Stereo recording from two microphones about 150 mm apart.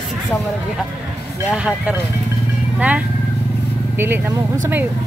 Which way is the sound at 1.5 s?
5° right (ahead or behind).